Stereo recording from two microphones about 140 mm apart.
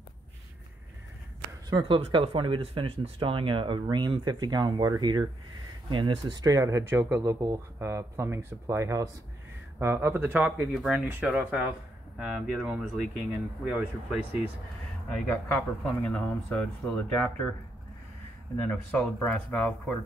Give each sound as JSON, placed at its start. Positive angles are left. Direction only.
{"t": 1.7, "sound": "speech", "side_deg": -35}
{"t": 10.7, "sound": "speech", "side_deg": -5}
{"t": 15.4, "sound": "speech", "side_deg": 15}
{"t": 18.7, "sound": "speech", "side_deg": 10}